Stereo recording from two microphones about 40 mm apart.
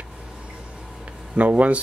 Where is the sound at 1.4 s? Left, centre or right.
Right.